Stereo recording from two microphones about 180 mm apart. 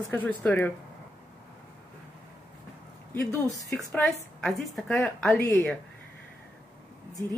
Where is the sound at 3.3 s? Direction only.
20° left (ahead or behind).